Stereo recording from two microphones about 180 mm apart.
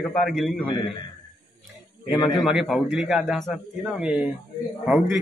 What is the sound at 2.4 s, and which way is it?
A man's voice, centre (ahead or behind).